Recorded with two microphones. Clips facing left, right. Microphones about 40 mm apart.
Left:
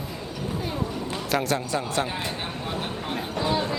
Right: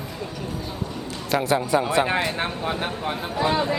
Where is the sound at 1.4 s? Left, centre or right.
Centre.